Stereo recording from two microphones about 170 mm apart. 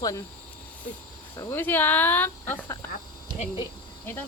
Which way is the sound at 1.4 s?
15° left (ahead or behind).